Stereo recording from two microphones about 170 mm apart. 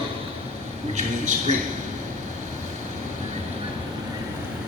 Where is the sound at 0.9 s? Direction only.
45° right (ahead or behind).